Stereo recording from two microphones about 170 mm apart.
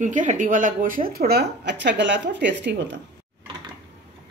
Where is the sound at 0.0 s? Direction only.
50° right (ahead or behind); by 3.0 s 90° right.